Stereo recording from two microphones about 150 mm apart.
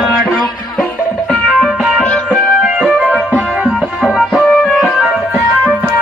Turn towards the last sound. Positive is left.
turn(degrees=-5)  # may be behind; listen again after turning